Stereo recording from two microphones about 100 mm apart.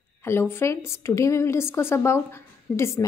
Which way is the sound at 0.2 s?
25° left (ahead or behind).